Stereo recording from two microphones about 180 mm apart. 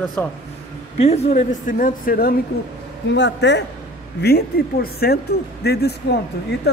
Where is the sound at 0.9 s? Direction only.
35° left (ahead or behind); by 2.3 s 55° left (ahead or behind).